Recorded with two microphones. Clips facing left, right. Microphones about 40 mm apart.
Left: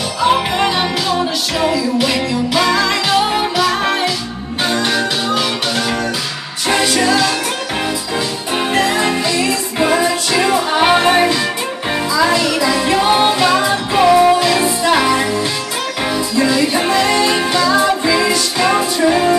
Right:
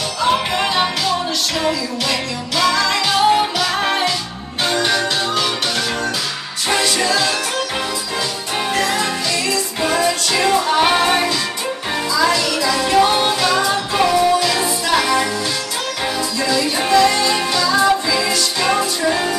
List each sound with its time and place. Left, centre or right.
0.2 s music: centre
6.7 s music: centre
8.7 s music: left
16.3 s music: left